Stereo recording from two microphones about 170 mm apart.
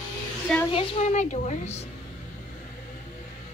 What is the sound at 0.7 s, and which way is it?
A woman's voice, 35° left (ahead or behind).